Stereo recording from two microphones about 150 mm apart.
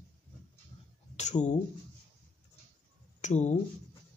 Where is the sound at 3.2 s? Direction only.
50° left (ahead or behind).